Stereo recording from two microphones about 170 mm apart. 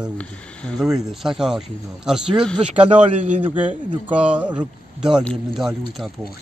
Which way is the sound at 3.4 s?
10° right (ahead or behind).